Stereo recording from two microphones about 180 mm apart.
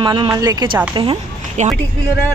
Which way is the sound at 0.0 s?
25° right (ahead or behind).